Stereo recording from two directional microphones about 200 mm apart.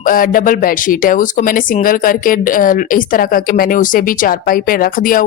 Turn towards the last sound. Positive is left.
turn(degrees=45)  # may be behind; listen again after turning